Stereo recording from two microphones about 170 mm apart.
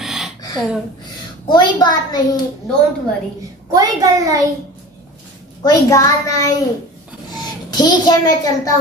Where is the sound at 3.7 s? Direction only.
20° right (ahead or behind).